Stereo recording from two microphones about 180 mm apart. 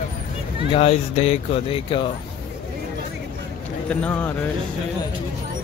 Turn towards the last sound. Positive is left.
turn(degrees=10)  # may be behind; listen again after turning